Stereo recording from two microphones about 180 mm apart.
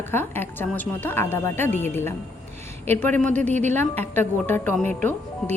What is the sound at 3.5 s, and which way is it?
Speech, 40° right (ahead or behind).